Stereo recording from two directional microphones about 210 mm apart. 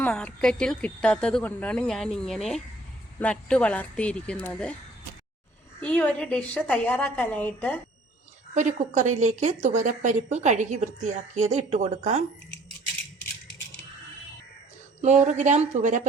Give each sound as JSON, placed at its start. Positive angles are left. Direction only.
{"t": 0.0, "sound": "speech", "side_deg": 5}
{"t": 5.8, "sound": "a woman's voice", "side_deg": 5}
{"t": 8.5, "sound": "a woman's voice", "side_deg": -35}
{"t": 15.0, "sound": "a woman's voice", "side_deg": -35}